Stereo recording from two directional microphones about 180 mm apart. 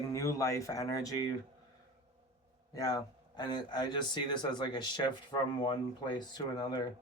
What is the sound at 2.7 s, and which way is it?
Speech, 20° left (ahead or behind).